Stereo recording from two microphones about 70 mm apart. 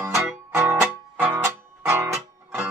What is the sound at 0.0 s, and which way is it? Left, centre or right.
Music, right.